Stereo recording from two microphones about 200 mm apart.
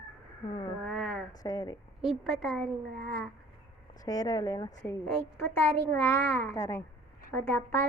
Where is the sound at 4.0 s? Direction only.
20° left (ahead or behind).